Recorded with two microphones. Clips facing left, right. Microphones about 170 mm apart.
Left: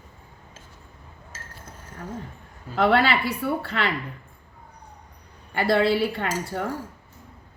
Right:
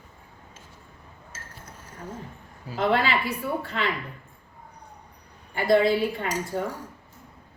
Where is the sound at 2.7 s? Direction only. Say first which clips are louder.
Left 3 dB; 70° left (ahead or behind).